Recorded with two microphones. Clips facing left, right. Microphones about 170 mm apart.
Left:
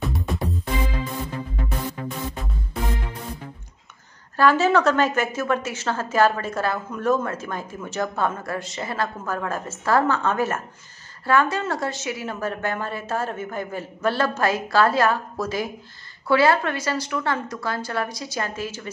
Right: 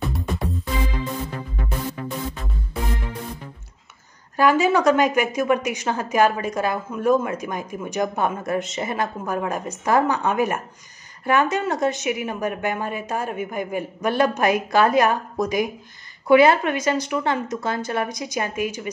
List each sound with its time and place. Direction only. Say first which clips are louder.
0.0 s music: even; centre (ahead or behind)
4.4 s a woman's voice: even; 10° right (ahead or behind)